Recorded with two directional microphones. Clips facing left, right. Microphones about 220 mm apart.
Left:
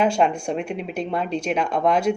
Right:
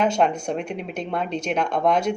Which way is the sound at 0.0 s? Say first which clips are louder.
Left 1 dB; 5° left (ahead or behind).